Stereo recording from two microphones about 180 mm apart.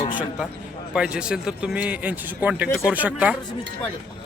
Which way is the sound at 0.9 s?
5° right (ahead or behind).